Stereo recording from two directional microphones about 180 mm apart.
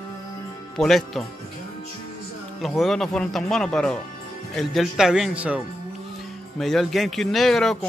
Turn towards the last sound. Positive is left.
turn(degrees=0)  # may be behind; listen again after turning